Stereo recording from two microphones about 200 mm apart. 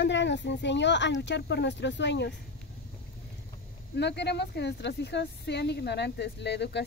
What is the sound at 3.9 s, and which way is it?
Speech, 60° left (ahead or behind).